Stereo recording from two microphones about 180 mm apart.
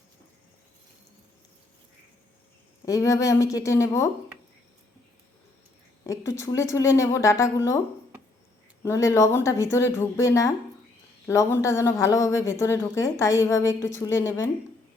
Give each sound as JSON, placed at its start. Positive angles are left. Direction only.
{"t": 2.8, "sound": "a woman's voice", "side_deg": 20}
{"t": 6.1, "sound": "a woman's voice", "side_deg": 15}
{"t": 8.8, "sound": "a woman's voice", "side_deg": 15}